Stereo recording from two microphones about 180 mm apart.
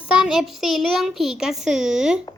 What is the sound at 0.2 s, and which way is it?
A child's voice, centre (ahead or behind).